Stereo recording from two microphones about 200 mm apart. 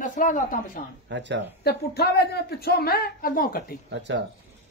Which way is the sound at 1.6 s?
55° left (ahead or behind).